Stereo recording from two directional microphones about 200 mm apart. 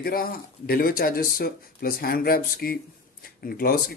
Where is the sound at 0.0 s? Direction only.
50° left (ahead or behind).